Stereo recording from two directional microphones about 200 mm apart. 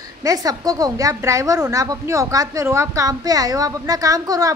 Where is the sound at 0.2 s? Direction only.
15° right (ahead or behind).